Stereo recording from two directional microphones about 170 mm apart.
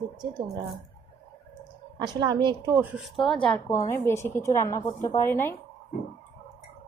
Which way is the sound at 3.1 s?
5° left (ahead or behind).